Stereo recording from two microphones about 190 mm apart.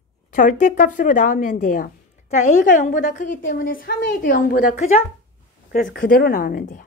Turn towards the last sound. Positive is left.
turn(degrees=45)  # may be behind; listen again after turning